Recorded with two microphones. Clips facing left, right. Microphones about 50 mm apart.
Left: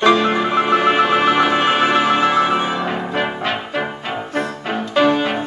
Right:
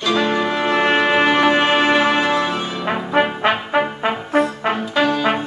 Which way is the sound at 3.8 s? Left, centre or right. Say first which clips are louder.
Right 4 dB; centre.